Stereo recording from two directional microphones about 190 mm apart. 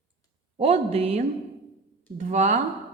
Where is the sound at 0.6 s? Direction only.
30° right (ahead or behind).